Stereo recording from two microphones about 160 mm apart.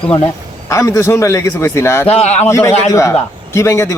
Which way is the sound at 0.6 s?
20° left (ahead or behind).